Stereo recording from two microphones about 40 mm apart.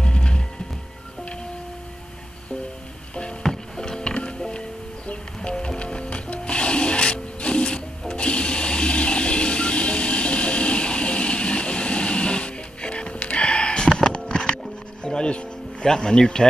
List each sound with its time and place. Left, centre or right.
0.0 s music: left
3.4 s music: centre
8.1 s toilet flush: left
15.2 s music: left
15.9 s speech: centre